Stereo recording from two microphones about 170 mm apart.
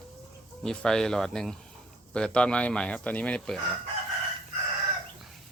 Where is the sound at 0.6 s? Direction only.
5° left (ahead or behind).